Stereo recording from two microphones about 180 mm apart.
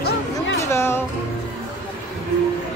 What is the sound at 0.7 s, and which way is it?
Music, 15° left (ahead or behind).